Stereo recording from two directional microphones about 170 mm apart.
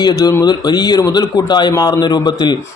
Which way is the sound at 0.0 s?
20° left (ahead or behind).